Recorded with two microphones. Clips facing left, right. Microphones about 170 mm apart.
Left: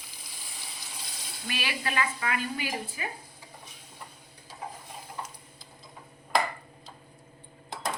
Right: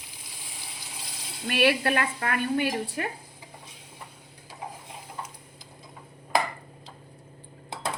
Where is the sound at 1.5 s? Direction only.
60° right (ahead or behind).